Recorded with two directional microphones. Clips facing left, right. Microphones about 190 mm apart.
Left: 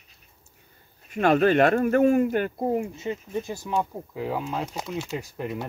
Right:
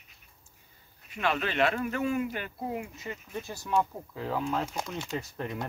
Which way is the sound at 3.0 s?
20° left (ahead or behind).